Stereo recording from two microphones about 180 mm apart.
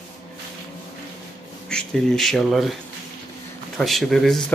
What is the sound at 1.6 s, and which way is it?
Speech, 5° left (ahead or behind).